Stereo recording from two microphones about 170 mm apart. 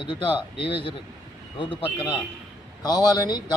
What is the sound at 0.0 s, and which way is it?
Speech, 30° left (ahead or behind).